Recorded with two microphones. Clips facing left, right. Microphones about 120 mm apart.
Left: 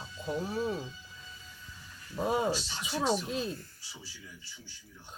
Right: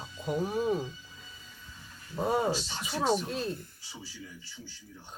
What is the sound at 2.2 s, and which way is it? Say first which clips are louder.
Speech: right 1 dB; centre (ahead or behind).